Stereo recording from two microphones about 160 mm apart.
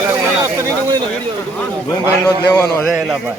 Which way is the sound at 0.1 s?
15° right (ahead or behind).